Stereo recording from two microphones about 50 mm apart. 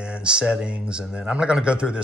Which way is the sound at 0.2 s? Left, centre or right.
Centre.